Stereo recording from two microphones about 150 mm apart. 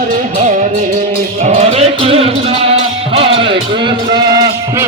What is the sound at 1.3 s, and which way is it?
Music, 50° right (ahead or behind).